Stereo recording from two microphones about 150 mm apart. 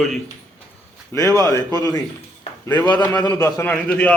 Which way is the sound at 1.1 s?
20° left (ahead or behind).